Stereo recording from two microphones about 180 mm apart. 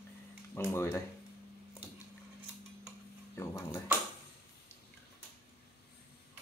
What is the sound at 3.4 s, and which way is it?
Speech, 15° left (ahead or behind).